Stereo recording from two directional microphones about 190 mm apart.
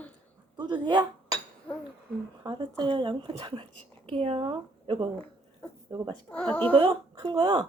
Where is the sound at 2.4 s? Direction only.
25° right (ahead or behind).